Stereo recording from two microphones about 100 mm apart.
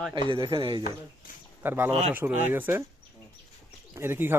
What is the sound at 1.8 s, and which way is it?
Speech, 90° right.